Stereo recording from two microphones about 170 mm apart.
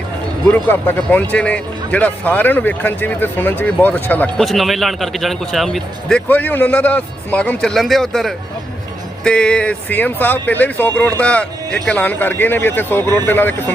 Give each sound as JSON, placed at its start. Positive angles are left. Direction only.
{"t": 0.5, "sound": "a man's voice", "side_deg": 10}